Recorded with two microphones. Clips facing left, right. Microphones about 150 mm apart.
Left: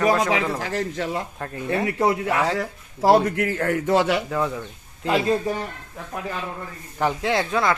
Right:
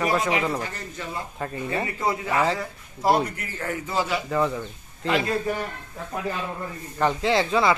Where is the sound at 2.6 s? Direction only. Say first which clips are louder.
Left 6 dB; 90° left; by 4.2 s 70° left (ahead or behind).